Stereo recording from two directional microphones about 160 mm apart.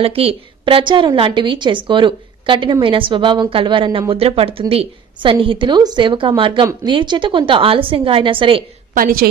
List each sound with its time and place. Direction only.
0.0 s a woman's voice: 35° right (ahead or behind)
8.9 s a woman's voice: 65° right (ahead or behind)